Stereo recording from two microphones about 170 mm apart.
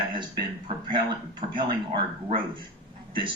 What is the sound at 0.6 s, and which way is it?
A man's voice, 30° right (ahead or behind).